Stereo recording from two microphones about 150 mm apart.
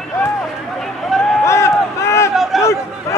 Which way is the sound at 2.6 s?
20° left (ahead or behind).